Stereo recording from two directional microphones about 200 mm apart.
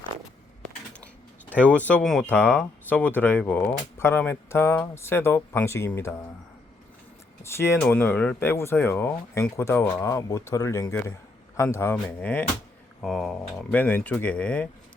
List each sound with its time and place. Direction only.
1.5 s speech: 5° left (ahead or behind)
7.4 s speech: 15° left (ahead or behind)